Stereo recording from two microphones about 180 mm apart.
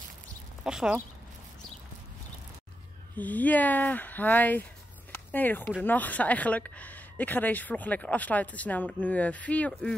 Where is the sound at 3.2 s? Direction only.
10° left (ahead or behind).